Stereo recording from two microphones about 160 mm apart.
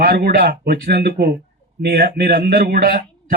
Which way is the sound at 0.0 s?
75° right (ahead or behind).